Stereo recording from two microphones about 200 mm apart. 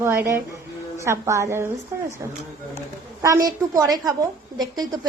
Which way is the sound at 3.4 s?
20° right (ahead or behind).